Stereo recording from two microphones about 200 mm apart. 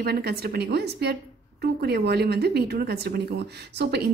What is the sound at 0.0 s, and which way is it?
A woman's voice, 55° right (ahead or behind).